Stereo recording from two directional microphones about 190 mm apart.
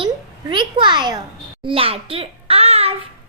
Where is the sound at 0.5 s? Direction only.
25° right (ahead or behind).